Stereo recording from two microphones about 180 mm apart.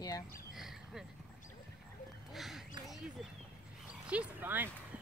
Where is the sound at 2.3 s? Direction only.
Centre (ahead or behind).